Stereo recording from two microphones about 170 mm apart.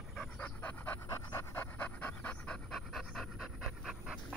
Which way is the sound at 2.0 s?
10° left (ahead or behind).